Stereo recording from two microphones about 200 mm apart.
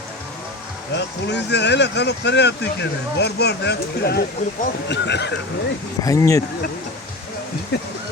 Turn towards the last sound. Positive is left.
turn(degrees=55)  # may be behind; listen again after turning